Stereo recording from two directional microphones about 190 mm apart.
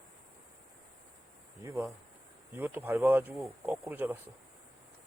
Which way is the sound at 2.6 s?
10° right (ahead or behind).